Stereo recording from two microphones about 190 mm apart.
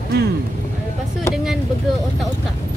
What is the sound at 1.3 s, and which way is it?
Speech, centre (ahead or behind).